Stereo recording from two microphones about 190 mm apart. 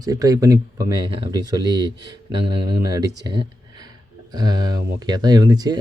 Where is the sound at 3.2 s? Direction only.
20° right (ahead or behind).